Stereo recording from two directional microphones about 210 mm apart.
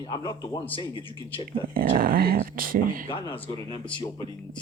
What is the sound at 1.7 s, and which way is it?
Speech, 45° right (ahead or behind).